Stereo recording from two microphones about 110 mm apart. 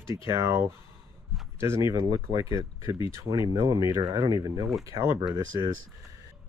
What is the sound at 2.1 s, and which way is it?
Speech, 40° right (ahead or behind).